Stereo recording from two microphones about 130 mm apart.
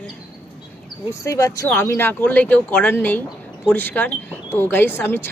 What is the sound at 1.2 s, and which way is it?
Speech, 25° left (ahead or behind).